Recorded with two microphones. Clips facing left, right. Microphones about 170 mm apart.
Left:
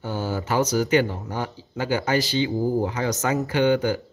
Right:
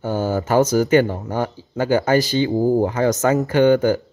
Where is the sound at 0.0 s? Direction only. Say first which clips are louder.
Right 6 dB; 45° right (ahead or behind).